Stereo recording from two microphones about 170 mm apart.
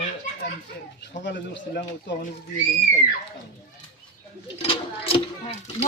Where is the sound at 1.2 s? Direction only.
90° left.